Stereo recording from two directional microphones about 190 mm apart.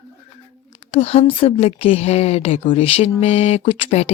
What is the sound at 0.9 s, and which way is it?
A woman's voice, 30° left (ahead or behind).